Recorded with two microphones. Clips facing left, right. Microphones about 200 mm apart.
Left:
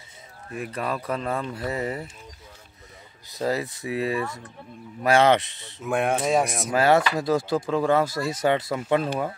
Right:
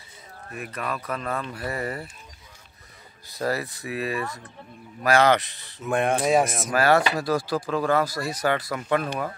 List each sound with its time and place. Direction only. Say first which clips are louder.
0.5 s speech: left 3 dB; 30° left (ahead or behind)
3.3 s speech: left 1 dB; 20° left (ahead or behind)
5.9 s speech: right 1 dB; 5° left (ahead or behind)
6.7 s speech: left 1 dB; 20° left (ahead or behind)